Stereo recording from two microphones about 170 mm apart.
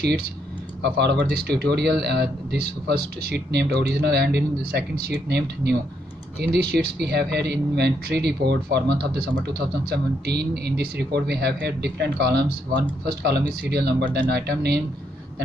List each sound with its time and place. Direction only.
0.8 s speech: 80° right